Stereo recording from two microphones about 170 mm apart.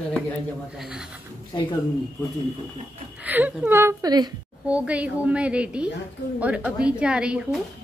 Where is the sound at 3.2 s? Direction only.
10° right (ahead or behind).